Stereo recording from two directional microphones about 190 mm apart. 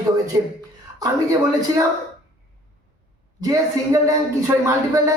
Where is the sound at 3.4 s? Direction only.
20° right (ahead or behind).